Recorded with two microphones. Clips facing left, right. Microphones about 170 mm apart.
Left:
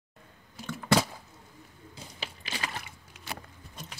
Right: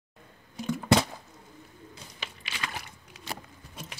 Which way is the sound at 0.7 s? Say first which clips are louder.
Right 4 dB; 15° right (ahead or behind).